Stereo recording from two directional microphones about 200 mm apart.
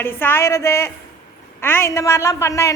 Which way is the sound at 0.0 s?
10° left (ahead or behind).